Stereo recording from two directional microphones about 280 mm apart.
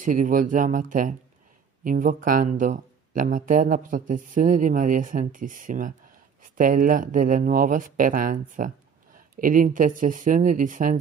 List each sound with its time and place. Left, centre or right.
0.0 s speech: right